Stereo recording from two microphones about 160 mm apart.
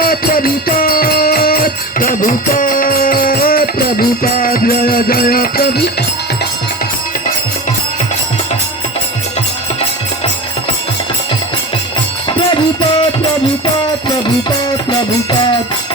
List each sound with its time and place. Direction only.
0.0 s music: 65° left (ahead or behind)